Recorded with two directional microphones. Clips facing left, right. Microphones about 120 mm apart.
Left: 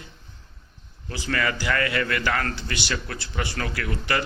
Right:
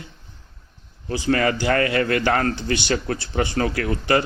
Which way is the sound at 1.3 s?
30° right (ahead or behind).